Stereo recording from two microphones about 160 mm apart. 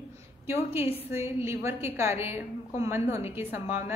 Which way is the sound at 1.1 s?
15° right (ahead or behind).